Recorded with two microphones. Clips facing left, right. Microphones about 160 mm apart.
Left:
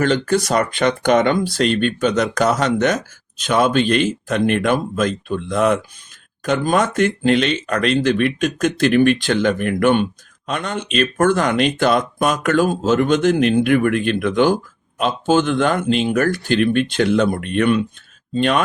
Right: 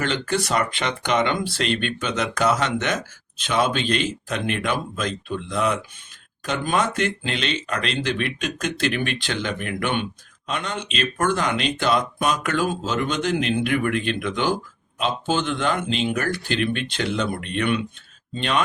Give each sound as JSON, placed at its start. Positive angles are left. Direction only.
{"t": 0.0, "sound": "speech", "side_deg": 40}